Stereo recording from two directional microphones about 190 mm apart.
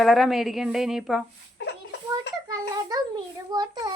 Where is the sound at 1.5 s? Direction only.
65° left (ahead or behind).